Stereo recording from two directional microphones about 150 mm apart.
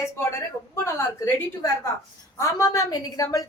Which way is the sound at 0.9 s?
15° left (ahead or behind).